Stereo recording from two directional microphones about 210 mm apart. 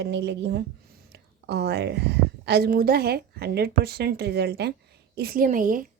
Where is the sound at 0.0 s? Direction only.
55° right (ahead or behind).